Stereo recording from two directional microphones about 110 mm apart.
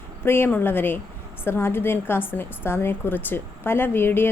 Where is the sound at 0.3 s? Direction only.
20° left (ahead or behind).